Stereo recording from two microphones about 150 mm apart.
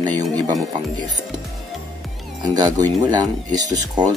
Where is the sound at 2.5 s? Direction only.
25° right (ahead or behind).